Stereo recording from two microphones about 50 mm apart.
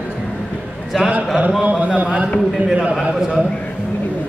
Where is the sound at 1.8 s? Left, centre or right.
Right.